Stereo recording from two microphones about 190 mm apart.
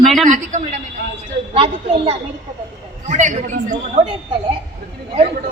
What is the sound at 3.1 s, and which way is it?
Speech, 40° right (ahead or behind).